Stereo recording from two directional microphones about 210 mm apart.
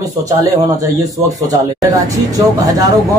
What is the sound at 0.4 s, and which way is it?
Speech, 15° right (ahead or behind).